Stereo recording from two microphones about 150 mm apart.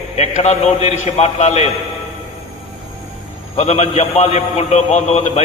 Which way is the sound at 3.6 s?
45° left (ahead or behind).